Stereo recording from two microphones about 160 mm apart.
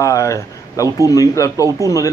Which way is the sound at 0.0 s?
20° left (ahead or behind).